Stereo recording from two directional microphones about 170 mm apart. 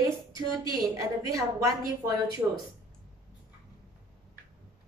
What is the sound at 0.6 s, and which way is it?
A woman's voice, 20° right (ahead or behind).